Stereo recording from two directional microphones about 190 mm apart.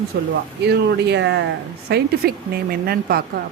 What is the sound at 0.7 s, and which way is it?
Speech, 60° right (ahead or behind).